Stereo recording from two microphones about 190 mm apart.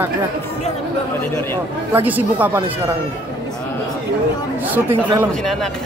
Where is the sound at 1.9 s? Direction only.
10° right (ahead or behind).